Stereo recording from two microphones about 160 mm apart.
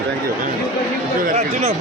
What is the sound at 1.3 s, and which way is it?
Speech, 40° right (ahead or behind).